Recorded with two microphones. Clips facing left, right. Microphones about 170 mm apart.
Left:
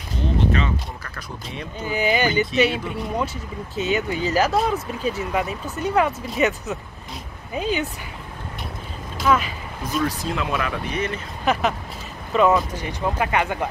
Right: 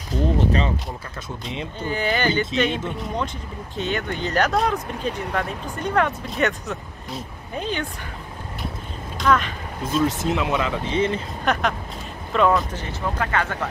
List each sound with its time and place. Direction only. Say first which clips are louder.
0.1 s speech: right 4 dB; 45° right (ahead or behind)
1.8 s speech: left 2 dB; 10° left (ahead or behind)
9.2 s speech: even; 5° left (ahead or behind)
9.8 s speech: right 3 dB; 25° right (ahead or behind)
11.5 s speech: left 1 dB; 5° left (ahead or behind)